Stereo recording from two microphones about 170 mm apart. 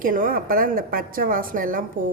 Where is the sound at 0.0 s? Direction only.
55° right (ahead or behind).